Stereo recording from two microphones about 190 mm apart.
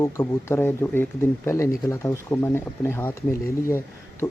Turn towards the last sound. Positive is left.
turn(degrees=15)  # may be behind; listen again after turning